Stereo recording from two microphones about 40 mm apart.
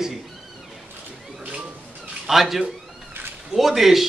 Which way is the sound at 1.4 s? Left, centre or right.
Right.